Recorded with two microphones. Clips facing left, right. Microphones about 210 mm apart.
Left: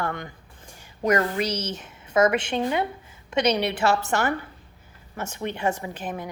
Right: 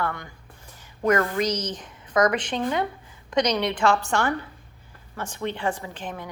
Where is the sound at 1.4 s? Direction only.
10° left (ahead or behind).